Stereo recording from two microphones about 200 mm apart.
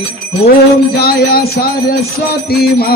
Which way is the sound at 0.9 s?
50° left (ahead or behind).